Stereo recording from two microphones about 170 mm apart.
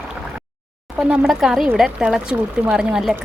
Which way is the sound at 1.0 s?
Centre (ahead or behind).